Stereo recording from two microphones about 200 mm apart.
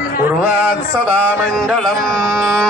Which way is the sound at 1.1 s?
5° left (ahead or behind).